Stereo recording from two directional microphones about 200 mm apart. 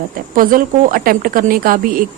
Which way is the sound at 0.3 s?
45° right (ahead or behind).